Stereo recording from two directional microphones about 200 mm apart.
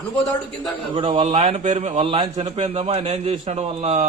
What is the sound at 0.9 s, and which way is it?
A man's voice, 30° right (ahead or behind).